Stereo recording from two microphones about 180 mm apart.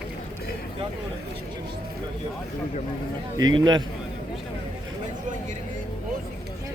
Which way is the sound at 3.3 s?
25° right (ahead or behind).